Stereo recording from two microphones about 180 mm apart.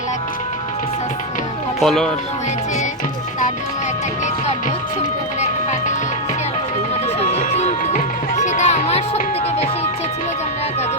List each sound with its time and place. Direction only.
1.8 s speech: centre (ahead or behind)
7.5 s music: 40° left (ahead or behind)